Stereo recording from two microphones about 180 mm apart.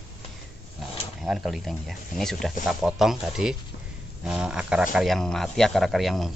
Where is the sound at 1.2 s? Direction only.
Centre (ahead or behind).